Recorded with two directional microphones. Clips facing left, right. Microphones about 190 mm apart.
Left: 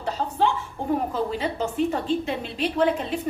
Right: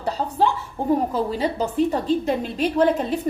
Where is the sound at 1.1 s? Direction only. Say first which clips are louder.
Right 3 dB; 40° right (ahead or behind).